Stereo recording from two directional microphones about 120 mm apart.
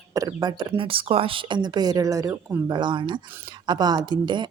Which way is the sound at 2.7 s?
40° right (ahead or behind).